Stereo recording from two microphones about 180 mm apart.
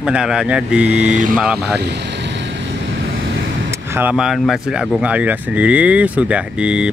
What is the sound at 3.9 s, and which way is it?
Speech, 5° right (ahead or behind).